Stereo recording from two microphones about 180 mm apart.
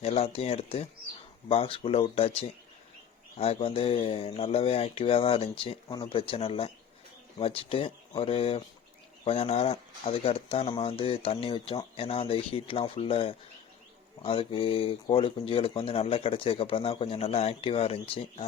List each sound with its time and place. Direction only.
0.0 s speech: 35° left (ahead or behind)